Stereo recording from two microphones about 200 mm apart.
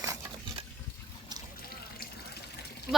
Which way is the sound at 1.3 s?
20° right (ahead or behind).